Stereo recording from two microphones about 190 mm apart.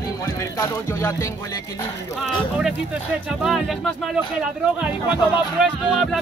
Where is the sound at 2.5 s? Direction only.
5° right (ahead or behind).